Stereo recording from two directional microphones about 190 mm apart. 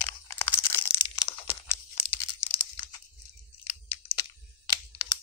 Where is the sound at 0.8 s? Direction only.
30° left (ahead or behind).